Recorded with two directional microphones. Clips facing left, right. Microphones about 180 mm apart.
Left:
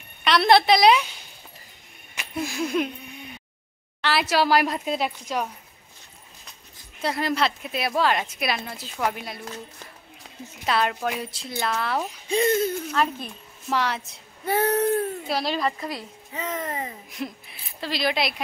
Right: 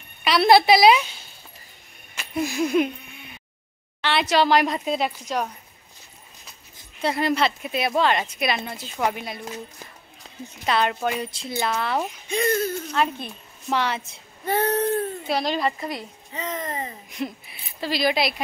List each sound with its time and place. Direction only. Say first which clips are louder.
0.2 s a woman's voice: right 2 dB; 5° right (ahead or behind)
2.4 s speech: right 4 dB; 5° right (ahead or behind)
4.0 s speech: right 2 dB; 5° left (ahead or behind)
7.0 s speech: right 2 dB; centre (ahead or behind)
10.6 s speech: right 1 dB; centre (ahead or behind)
12.3 s speech: left 2 dB; 25° left (ahead or behind)
13.2 s a child's voice: right 1 dB; centre (ahead or behind)